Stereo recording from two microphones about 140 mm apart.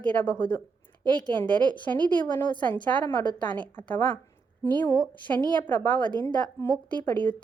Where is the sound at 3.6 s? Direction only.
10° left (ahead or behind).